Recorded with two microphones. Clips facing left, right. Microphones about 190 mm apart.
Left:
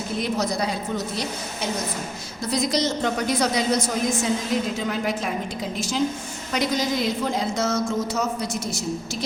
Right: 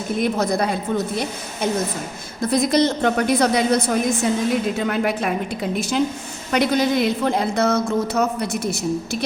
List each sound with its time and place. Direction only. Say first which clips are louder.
0.2 s a woman's voice: right 5 dB; 55° right (ahead or behind)
2.4 s a woman's voice: right 6 dB; 55° right (ahead or behind)